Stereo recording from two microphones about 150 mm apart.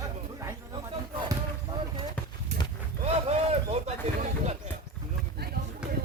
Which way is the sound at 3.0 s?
45° right (ahead or behind).